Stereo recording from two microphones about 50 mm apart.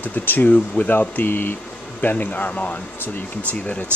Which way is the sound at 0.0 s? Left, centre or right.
Left.